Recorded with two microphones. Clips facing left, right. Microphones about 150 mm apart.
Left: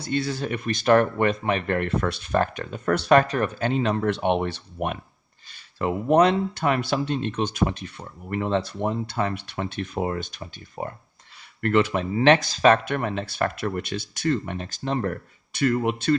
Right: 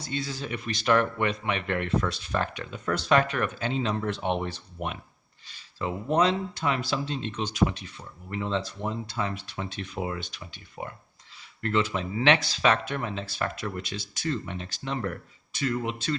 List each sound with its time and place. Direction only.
0.0 s speech: 60° left (ahead or behind); by 3.6 s 40° left (ahead or behind)
3.6 s speech: 55° left (ahead or behind)
11.6 s speech: 60° left (ahead or behind)
12.1 s speech: 45° left (ahead or behind)
15.5 s speech: 55° left (ahead or behind)